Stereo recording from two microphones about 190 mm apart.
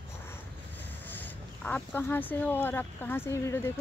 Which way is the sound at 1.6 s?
10° left (ahead or behind).